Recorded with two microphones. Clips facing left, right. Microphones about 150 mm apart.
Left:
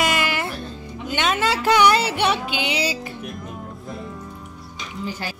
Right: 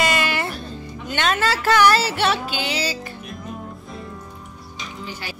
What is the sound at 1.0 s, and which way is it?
Speech, 10° left (ahead or behind).